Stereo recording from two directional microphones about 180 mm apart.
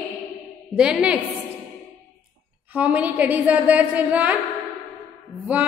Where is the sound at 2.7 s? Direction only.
10° right (ahead or behind).